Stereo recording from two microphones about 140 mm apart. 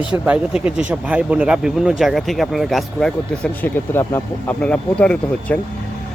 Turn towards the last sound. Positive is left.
turn(degrees=10)  # may be behind; listen again after turning